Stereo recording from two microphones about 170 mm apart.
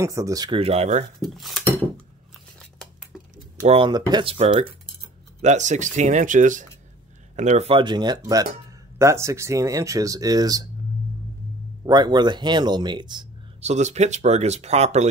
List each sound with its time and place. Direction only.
0.0 s speech: 20° right (ahead or behind); by 1.0 s 40° right (ahead or behind)
1.2 s speech: centre (ahead or behind)
3.6 s speech: 30° right (ahead or behind)
11.8 s speech: 25° right (ahead or behind)
13.6 s speech: 40° right (ahead or behind)